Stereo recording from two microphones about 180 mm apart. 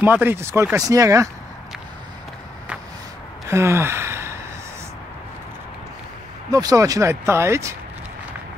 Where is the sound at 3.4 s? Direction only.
15° right (ahead or behind).